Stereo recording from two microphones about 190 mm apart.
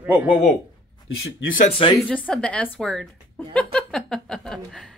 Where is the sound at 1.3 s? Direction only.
90° left.